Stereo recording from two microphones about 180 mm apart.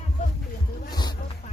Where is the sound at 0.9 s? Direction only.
25° left (ahead or behind).